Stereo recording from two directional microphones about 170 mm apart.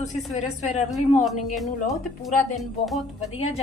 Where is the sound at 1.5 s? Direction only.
Centre (ahead or behind).